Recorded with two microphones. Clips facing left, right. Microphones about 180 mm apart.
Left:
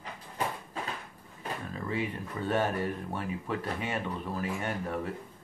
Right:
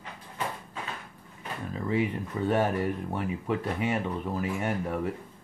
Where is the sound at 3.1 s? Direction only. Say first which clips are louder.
Right 4 dB; 20° right (ahead or behind).